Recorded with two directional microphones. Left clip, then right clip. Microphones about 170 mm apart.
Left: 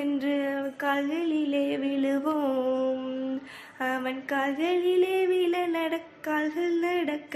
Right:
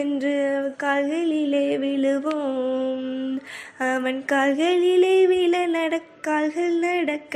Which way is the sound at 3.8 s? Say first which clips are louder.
Right 6 dB; 30° right (ahead or behind).